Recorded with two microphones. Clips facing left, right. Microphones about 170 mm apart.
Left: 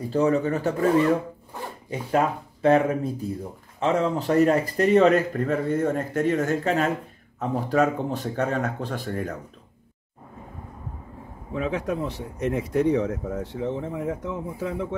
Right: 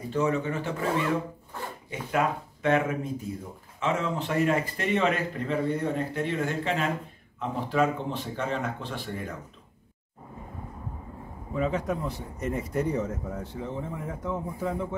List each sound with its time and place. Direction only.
0.1 s speech: 35° left (ahead or behind)
1.5 s zipper: 15° left (ahead or behind)
1.9 s speech: 35° left (ahead or behind)
11.5 s speech: 90° left